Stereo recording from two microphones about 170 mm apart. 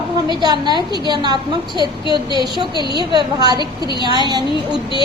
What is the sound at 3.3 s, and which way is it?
Speech, 25° right (ahead or behind).